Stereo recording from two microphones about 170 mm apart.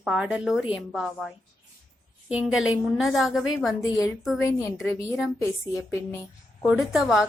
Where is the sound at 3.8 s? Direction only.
20° left (ahead or behind).